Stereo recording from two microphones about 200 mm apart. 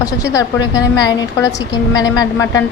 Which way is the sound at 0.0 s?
15° left (ahead or behind).